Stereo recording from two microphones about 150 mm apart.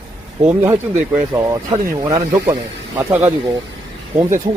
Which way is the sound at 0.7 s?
20° right (ahead or behind).